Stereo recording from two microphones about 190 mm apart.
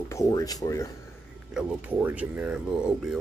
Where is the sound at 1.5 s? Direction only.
10° right (ahead or behind).